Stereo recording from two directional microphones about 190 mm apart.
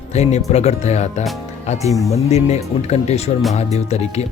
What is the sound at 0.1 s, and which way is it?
Speech, 35° left (ahead or behind).